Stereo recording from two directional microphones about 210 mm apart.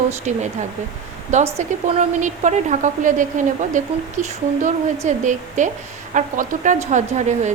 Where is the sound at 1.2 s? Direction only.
35° right (ahead or behind).